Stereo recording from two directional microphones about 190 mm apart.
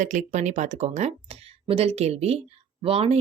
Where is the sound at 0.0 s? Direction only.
40° right (ahead or behind).